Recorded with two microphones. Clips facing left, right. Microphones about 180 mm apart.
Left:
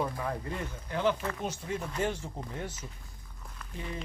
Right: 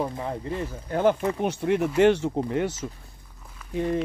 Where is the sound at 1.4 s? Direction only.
65° right (ahead or behind); by 2.9 s 80° right.